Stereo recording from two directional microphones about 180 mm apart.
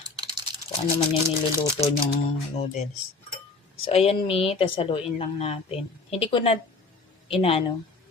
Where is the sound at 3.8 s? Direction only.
35° left (ahead or behind).